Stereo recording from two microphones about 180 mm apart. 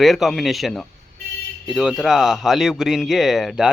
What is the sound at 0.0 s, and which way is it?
Speech, centre (ahead or behind).